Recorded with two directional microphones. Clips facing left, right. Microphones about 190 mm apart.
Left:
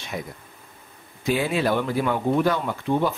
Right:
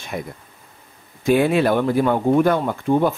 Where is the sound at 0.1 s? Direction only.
50° right (ahead or behind).